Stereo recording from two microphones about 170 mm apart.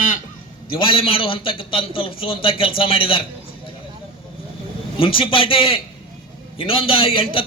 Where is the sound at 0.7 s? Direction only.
30° left (ahead or behind).